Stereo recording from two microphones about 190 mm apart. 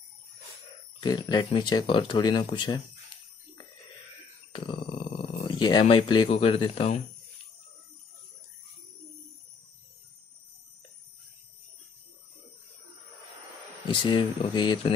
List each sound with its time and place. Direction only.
1.0 s speech: 20° left (ahead or behind)
4.5 s groan: 25° left (ahead or behind)
5.5 s speech: 25° left (ahead or behind)
13.8 s speech: 25° left (ahead or behind)